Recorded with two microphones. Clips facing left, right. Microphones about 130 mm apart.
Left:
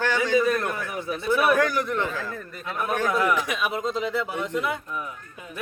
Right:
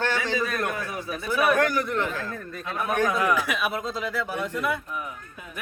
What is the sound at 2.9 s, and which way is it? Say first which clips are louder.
Speech: even; 20° right (ahead or behind).